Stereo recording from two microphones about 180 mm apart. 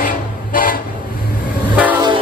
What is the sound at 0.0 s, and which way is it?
Vehicle, 50° left (ahead or behind).